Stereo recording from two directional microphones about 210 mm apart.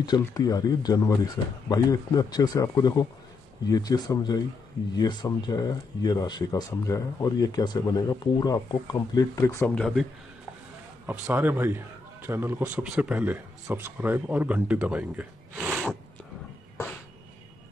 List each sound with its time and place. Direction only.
0.0 s speech: 20° left (ahead or behind)
11.1 s a man's voice: 10° right (ahead or behind)